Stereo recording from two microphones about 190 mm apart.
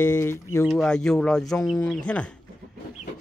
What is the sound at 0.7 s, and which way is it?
Speech, 5° left (ahead or behind).